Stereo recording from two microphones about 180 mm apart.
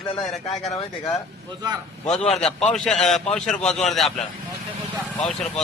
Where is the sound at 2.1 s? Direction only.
5° left (ahead or behind).